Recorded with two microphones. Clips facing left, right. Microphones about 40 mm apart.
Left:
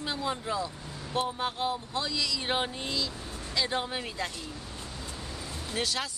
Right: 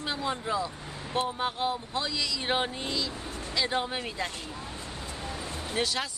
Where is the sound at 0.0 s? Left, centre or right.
Centre.